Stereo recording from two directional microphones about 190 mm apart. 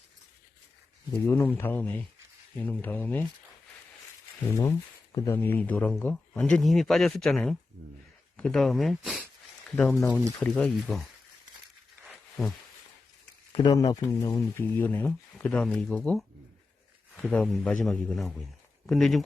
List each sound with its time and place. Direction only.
1.1 s speech: 15° left (ahead or behind)
4.4 s a man's voice: 10° left (ahead or behind)
13.5 s a man's voice: 25° left (ahead or behind); by 19.2 s centre (ahead or behind)